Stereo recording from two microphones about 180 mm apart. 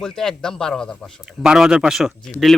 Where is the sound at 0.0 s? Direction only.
5° left (ahead or behind).